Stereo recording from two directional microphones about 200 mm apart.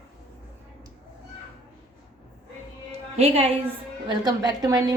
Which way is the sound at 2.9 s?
30° right (ahead or behind).